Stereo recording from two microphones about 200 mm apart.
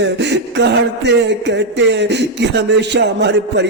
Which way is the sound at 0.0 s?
60° right (ahead or behind).